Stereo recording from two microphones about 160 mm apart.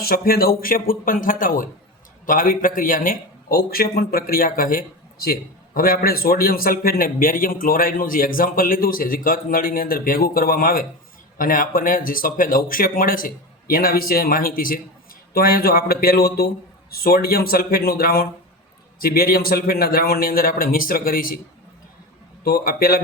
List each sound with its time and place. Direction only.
0.0 s a man's voice: 70° left (ahead or behind)
22.4 s speech: 70° left (ahead or behind)